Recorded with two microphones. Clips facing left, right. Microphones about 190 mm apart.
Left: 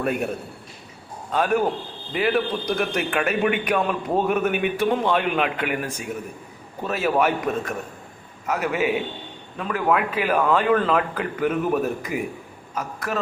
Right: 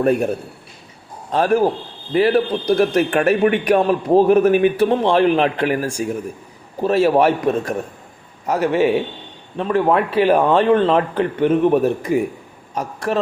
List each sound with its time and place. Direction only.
0.0 s a man's voice: 35° right (ahead or behind)
1.3 s a man's voice: 30° right (ahead or behind)